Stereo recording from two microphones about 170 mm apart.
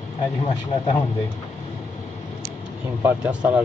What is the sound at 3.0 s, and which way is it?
Speech, 5° right (ahead or behind).